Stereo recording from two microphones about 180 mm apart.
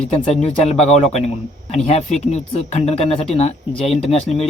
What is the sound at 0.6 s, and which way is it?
Speech, 35° left (ahead or behind).